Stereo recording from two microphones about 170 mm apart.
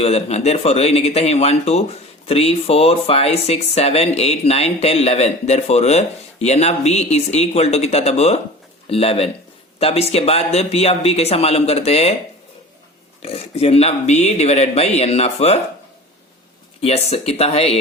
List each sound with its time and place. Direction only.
0.0 s speech: 40° left (ahead or behind)
13.2 s speech: 35° left (ahead or behind)
16.8 s speech: 40° left (ahead or behind)